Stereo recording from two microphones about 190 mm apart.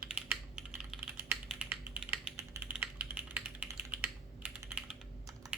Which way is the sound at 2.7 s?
10° right (ahead or behind).